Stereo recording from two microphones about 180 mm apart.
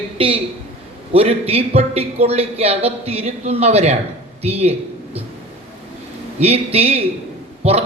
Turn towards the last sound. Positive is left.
turn(degrees=-35)  # may be behind; listen again after turning